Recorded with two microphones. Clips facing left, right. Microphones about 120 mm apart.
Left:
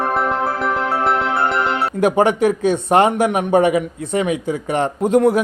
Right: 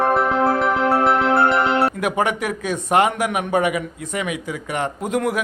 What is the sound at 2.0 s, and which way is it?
A man's voice, 30° left (ahead or behind).